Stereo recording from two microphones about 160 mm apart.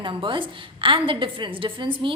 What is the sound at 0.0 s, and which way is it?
A woman's voice, 30° right (ahead or behind).